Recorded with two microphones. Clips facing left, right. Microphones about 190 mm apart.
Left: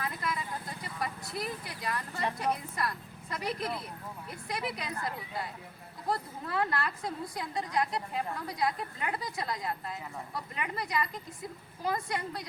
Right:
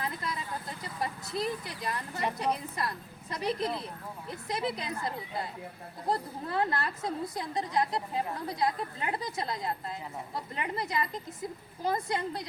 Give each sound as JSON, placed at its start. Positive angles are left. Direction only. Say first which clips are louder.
{"t": 0.0, "sound": "vehicle", "louder": "even", "side_deg": -25}
{"t": 0.9, "sound": "a woman's voice", "louder": "right 3 dB", "side_deg": -25}